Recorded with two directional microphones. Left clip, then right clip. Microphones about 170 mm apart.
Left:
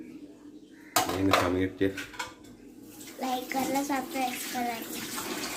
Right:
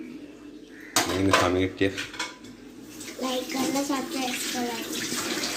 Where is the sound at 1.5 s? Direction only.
15° left (ahead or behind).